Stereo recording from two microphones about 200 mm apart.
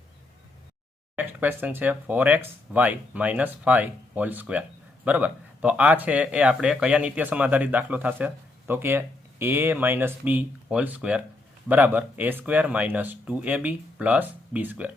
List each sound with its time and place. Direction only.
1.1 s speech: 10° right (ahead or behind)